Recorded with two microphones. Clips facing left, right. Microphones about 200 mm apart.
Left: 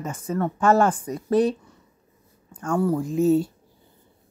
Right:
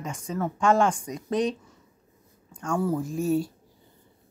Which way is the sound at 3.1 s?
20° left (ahead or behind).